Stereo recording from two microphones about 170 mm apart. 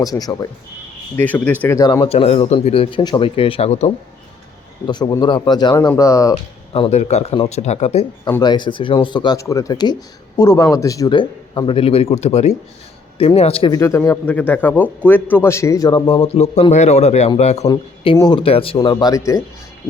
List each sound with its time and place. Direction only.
0.0 s speech: 20° left (ahead or behind)
1.1 s speech: 10° left (ahead or behind)
1.6 s speech: 20° left (ahead or behind); by 3.9 s 40° left (ahead or behind)
4.9 s speech: 25° left (ahead or behind)
6.7 s speech: 35° left (ahead or behind)
8.4 s speech: 25° left (ahead or behind)
13.7 s speech: 15° left (ahead or behind)